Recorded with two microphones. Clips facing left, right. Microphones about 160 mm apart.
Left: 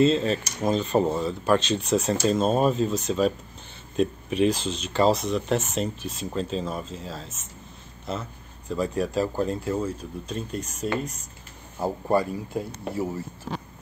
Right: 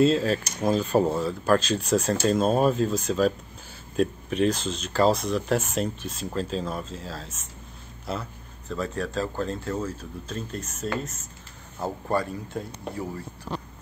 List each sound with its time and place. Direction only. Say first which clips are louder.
0.0 s speech: even; centre (ahead or behind)
8.7 s speech: left 4 dB; 10° left (ahead or behind)